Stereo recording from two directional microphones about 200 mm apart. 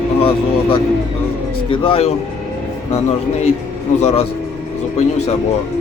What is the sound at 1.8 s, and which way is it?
Speech, 30° left (ahead or behind).